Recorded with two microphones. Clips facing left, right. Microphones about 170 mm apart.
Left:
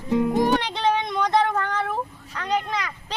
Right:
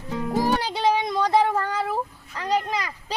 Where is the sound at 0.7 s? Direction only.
10° right (ahead or behind).